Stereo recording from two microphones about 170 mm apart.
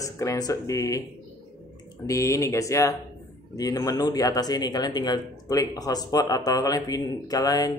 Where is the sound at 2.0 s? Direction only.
20° left (ahead or behind).